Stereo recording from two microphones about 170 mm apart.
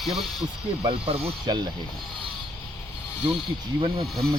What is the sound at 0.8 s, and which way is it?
Speech, 35° right (ahead or behind).